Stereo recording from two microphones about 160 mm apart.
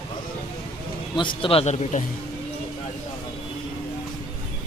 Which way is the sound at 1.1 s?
30° left (ahead or behind).